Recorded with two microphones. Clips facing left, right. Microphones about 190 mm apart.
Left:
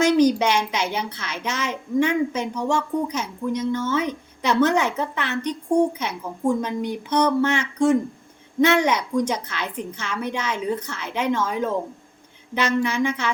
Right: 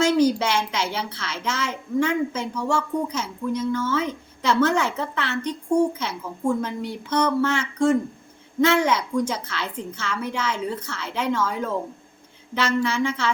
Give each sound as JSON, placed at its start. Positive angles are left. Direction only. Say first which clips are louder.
{"t": 0.0, "sound": "a child's voice", "louder": "left 2 dB", "side_deg": 15}